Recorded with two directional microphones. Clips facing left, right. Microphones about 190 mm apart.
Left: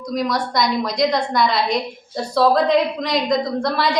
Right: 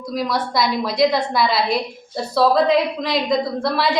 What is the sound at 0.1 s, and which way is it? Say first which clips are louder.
A woman's voice: left 1 dB; centre (ahead or behind).